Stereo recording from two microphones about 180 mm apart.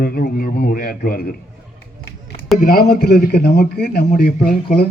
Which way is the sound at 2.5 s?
55° left (ahead or behind).